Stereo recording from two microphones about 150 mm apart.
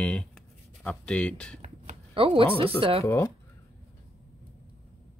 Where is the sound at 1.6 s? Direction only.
40° right (ahead or behind).